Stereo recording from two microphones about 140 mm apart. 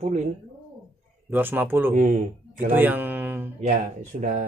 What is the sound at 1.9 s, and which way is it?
Speech, 70° right (ahead or behind).